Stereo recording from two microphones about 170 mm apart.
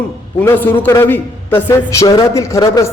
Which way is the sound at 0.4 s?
10° left (ahead or behind).